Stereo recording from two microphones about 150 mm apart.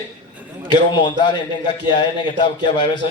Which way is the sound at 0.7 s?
30° left (ahead or behind).